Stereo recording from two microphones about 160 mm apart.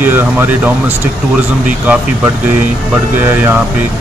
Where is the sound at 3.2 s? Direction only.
15° right (ahead or behind).